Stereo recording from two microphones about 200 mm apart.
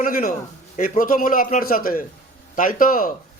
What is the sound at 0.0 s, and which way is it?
A man's voice, 40° left (ahead or behind).